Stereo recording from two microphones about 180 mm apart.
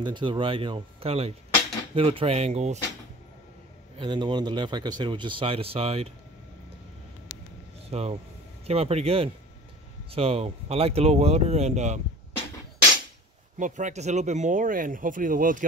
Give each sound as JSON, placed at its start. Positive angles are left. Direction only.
{"t": 0.0, "sound": "speech", "side_deg": -25}
{"t": 4.0, "sound": "speech", "side_deg": -25}
{"t": 7.9, "sound": "speech", "side_deg": -35}
{"t": 13.6, "sound": "speech", "side_deg": -45}